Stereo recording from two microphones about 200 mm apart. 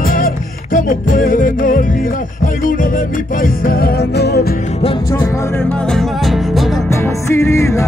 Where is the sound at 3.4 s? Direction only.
45° left (ahead or behind).